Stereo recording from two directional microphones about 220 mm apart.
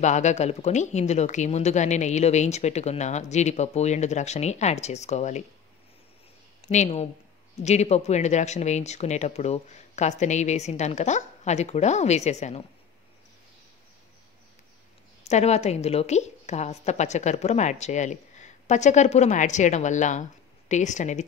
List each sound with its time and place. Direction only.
0.0 s a woman's voice: 30° left (ahead or behind)
6.7 s a woman's voice: 30° left (ahead or behind)
15.2 s a woman's voice: 30° left (ahead or behind)